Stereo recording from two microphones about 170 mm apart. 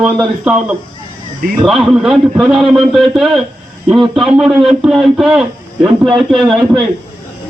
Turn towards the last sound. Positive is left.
turn(degrees=0)  # may be behind; listen again after turning